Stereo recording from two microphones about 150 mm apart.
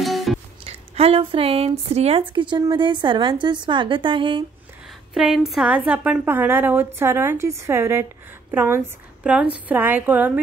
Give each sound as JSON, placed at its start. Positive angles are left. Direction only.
{"t": 0.0, "sound": "music", "side_deg": 0}
{"t": 0.7, "sound": "speech", "side_deg": -40}
{"t": 5.1, "sound": "a woman's voice", "side_deg": 0}